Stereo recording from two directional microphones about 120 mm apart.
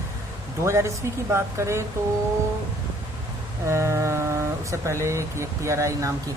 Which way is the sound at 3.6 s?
25° right (ahead or behind).